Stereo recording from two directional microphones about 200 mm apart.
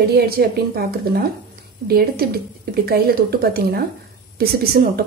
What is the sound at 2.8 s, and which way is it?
A woman's voice, 50° right (ahead or behind).